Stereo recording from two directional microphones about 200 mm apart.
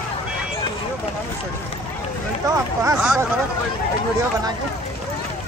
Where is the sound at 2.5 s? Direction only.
15° right (ahead or behind).